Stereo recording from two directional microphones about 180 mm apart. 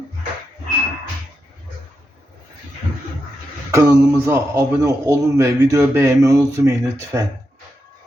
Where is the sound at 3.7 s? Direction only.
15° right (ahead or behind).